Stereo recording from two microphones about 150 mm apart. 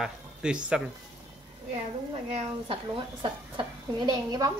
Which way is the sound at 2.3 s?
40° right (ahead or behind).